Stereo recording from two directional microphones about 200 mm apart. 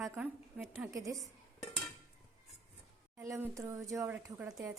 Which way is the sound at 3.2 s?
15° right (ahead or behind).